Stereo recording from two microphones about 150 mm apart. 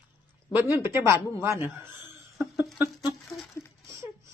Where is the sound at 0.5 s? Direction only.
15° right (ahead or behind).